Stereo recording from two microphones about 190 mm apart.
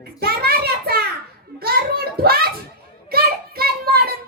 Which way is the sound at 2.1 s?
55° right (ahead or behind).